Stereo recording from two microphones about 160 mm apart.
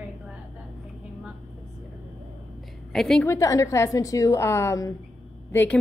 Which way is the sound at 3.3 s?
20° left (ahead or behind).